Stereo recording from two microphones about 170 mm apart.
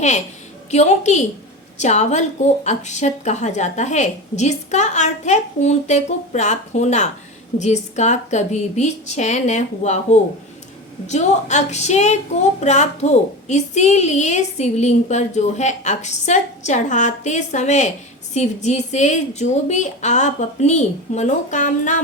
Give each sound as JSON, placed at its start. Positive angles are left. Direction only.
{"t": 0.7, "sound": "speech", "side_deg": 40}